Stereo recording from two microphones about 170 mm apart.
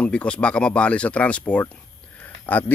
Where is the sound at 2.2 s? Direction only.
10° left (ahead or behind).